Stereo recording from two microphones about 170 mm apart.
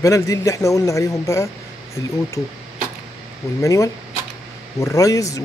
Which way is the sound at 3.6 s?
20° left (ahead or behind).